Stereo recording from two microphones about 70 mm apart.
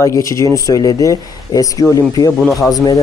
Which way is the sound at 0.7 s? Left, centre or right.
Left.